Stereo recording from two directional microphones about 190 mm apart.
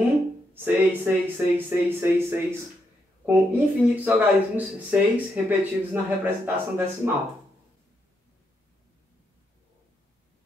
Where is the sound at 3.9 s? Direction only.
10° right (ahead or behind).